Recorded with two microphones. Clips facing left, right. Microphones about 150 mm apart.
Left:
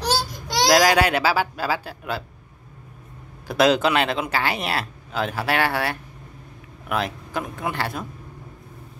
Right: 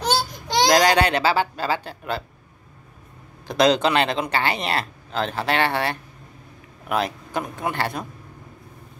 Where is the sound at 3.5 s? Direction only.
5° left (ahead or behind).